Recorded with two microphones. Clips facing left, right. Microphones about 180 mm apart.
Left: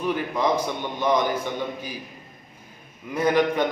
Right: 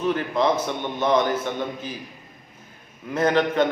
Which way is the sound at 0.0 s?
10° left (ahead or behind).